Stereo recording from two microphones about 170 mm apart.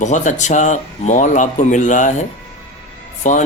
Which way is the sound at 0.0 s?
45° left (ahead or behind).